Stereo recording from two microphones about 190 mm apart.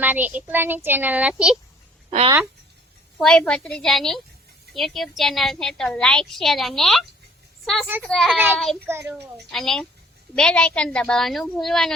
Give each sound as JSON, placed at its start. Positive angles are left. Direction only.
{"t": 0.0, "sound": "speech", "side_deg": -10}
{"t": 2.0, "sound": "speech", "side_deg": -35}
{"t": 3.2, "sound": "a woman's voice", "side_deg": 5}
{"t": 8.9, "sound": "speech", "side_deg": -15}
{"t": 9.1, "sound": "a woman's voice", "side_deg": 0}